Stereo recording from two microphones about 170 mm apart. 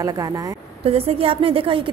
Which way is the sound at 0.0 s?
20° right (ahead or behind).